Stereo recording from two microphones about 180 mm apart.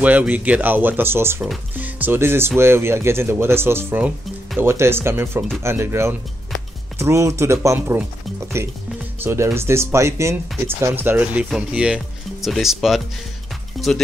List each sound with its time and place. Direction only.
0.0 s speech: 10° right (ahead or behind)
13.7 s music: centre (ahead or behind)